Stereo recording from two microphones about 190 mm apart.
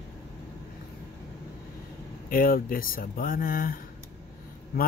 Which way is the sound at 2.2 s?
50° left (ahead or behind).